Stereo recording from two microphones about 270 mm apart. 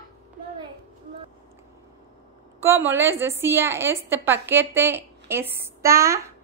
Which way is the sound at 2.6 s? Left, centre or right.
Centre.